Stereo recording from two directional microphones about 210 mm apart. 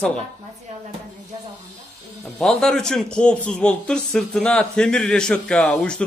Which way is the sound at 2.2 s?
Centre (ahead or behind).